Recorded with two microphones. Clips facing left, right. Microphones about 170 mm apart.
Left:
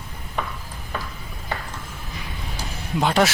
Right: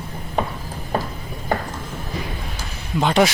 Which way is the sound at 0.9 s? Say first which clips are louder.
Right 8 dB; 35° right (ahead or behind).